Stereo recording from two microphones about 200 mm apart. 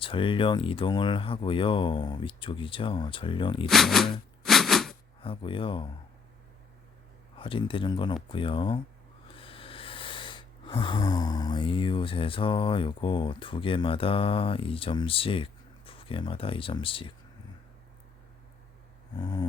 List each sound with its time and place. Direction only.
0.0 s speech: 25° left (ahead or behind)
3.7 s speech: centre (ahead or behind)
4.4 s a sound: centre (ahead or behind)
5.2 s speech: 25° left (ahead or behind)
7.3 s speech: 25° left (ahead or behind)
9.3 s a sound: 25° left (ahead or behind)
19.1 s speech: 20° left (ahead or behind)